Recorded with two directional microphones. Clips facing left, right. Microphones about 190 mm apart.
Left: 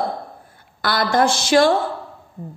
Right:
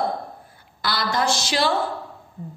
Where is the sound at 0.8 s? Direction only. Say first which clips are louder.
Left 5 dB; 55° left (ahead or behind).